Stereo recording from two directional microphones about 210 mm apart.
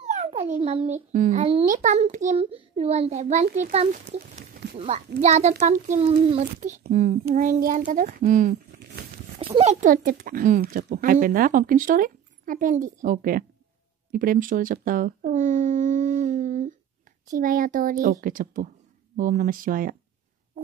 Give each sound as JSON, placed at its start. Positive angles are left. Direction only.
{"t": 0.0, "sound": "a sound", "side_deg": -35}
{"t": 0.6, "sound": "a child's voice", "side_deg": -30}
{"t": 6.5, "sound": "speech", "side_deg": -40}